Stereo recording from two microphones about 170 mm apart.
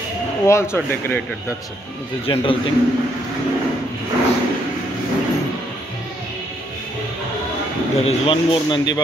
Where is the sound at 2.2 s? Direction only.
30° left (ahead or behind).